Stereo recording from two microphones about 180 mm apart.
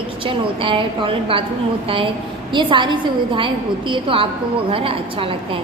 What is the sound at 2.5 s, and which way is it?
A woman's voice, 25° right (ahead or behind).